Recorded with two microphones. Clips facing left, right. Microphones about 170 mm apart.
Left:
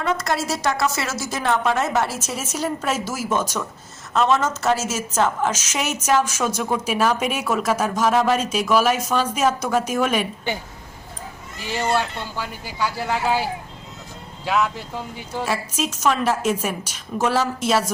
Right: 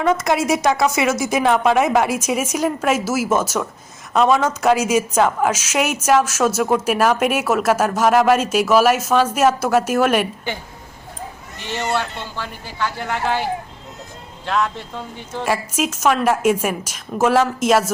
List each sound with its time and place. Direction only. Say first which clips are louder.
0.0 s a woman's voice: right 5 dB; 20° right (ahead or behind)
11.6 s speech: even; 5° left (ahead or behind)
15.4 s a woman's voice: right 5 dB; 10° right (ahead or behind)